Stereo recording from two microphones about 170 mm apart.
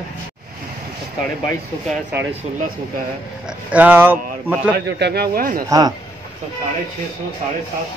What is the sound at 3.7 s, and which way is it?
Speech, 10° right (ahead or behind).